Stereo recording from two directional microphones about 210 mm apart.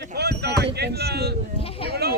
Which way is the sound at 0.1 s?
50° right (ahead or behind).